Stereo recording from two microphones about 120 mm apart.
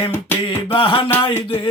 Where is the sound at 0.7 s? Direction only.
45° left (ahead or behind).